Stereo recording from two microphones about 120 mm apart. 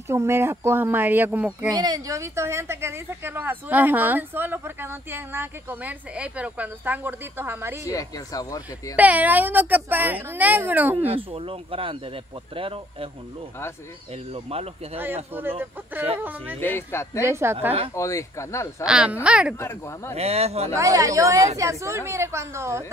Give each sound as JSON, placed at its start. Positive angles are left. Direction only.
{"t": 0.1, "sound": "a woman's voice", "side_deg": -20}
{"t": 1.7, "sound": "a woman's voice", "side_deg": -35}
{"t": 7.8, "sound": "speech", "side_deg": 30}
{"t": 8.9, "sound": "a woman's voice", "side_deg": -15}
{"t": 11.1, "sound": "speech", "side_deg": -50}
{"t": 14.3, "sound": "a man's voice", "side_deg": -55}
{"t": 15.6, "sound": "a woman's voice", "side_deg": -15}
{"t": 16.5, "sound": "speech", "side_deg": 20}
{"t": 17.2, "sound": "speech", "side_deg": -20}
{"t": 17.9, "sound": "speech", "side_deg": 25}
{"t": 18.9, "sound": "a woman's voice", "side_deg": -5}
{"t": 20.2, "sound": "a man's voice", "side_deg": -60}
{"t": 20.7, "sound": "speech", "side_deg": -25}